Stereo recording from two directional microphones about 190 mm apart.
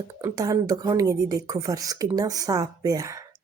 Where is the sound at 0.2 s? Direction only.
20° right (ahead or behind).